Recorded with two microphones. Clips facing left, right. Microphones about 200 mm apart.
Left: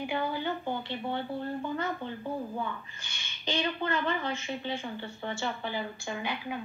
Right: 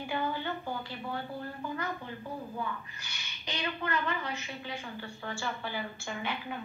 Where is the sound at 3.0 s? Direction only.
25° left (ahead or behind).